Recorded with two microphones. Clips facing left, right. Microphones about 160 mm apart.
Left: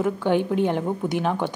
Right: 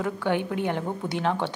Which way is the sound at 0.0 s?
20° left (ahead or behind).